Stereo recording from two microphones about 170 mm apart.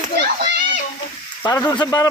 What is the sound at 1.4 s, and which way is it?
Speech, 20° left (ahead or behind).